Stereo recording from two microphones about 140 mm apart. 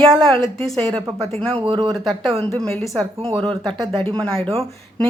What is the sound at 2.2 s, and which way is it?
A woman's voice, 45° right (ahead or behind).